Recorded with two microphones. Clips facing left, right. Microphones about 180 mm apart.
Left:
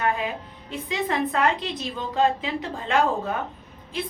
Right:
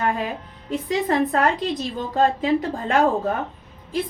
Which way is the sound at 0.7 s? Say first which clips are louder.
Right 5 dB; 45° right (ahead or behind).